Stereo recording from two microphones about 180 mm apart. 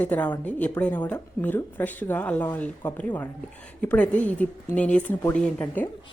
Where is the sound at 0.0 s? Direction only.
10° left (ahead or behind).